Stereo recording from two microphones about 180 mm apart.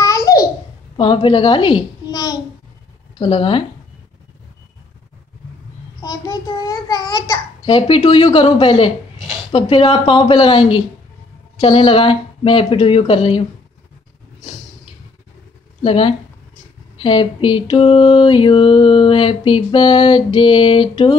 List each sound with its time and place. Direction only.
0.0 s babbling: 20° left (ahead or behind)
0.9 s a child's voice: 30° left (ahead or behind)
3.2 s mantra: 30° left (ahead or behind)
6.0 s a child's voice: 20° left (ahead or behind)
7.6 s mantra: 30° left (ahead or behind)
15.8 s mantra: 30° left (ahead or behind)